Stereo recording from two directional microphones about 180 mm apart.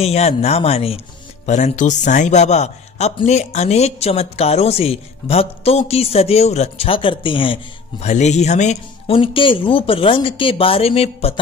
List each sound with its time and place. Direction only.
0.0 s speech: 35° left (ahead or behind)
8.0 s speech: 40° left (ahead or behind)